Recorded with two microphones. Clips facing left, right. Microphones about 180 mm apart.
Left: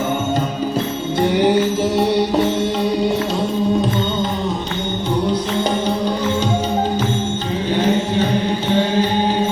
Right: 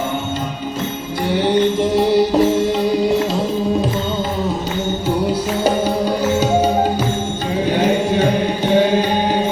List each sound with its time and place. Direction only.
1.2 s music: 15° left (ahead or behind); by 3.2 s centre (ahead or behind)
5.3 s music: 10° right (ahead or behind)
7.7 s music: 10° right (ahead or behind)